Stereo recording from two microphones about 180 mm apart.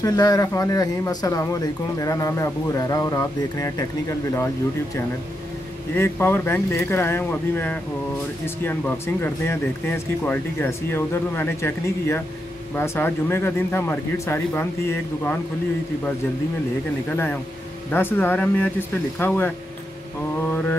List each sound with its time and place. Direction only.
0.0 s a man's voice: 20° left (ahead or behind)
5.9 s speech: 10° left (ahead or behind)
17.1 s speech: 10° left (ahead or behind)